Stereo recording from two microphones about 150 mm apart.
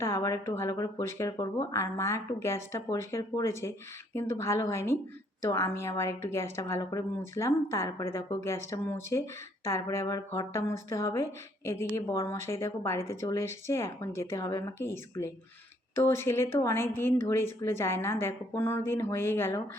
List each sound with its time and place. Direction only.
0.0 s speech: 20° left (ahead or behind)